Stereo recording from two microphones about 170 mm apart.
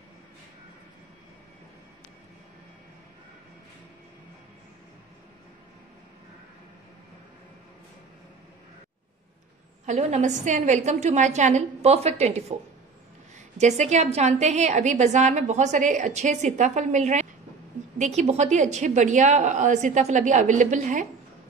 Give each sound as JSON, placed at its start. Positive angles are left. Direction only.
{"t": 9.8, "sound": "a woman's voice", "side_deg": -45}
{"t": 13.6, "sound": "a woman's voice", "side_deg": -45}